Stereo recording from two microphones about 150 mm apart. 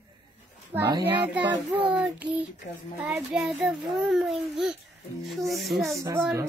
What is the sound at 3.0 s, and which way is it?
A child's voice, centre (ahead or behind).